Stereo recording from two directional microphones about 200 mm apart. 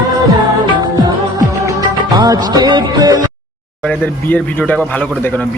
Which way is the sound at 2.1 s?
20° right (ahead or behind).